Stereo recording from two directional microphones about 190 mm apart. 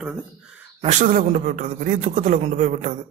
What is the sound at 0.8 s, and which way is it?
A man's voice, 45° right (ahead or behind).